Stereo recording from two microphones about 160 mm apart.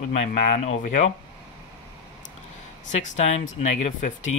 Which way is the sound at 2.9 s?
50° left (ahead or behind).